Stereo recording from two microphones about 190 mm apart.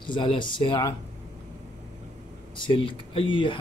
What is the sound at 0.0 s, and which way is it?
Speech, 25° left (ahead or behind).